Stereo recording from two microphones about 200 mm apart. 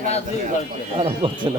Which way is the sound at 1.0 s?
25° right (ahead or behind).